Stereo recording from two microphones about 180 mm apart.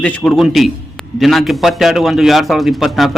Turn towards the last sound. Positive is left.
turn(degrees=0)  # may be behind; listen again after turning